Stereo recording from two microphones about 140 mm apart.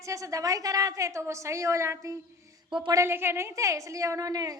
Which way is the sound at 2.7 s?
35° right (ahead or behind).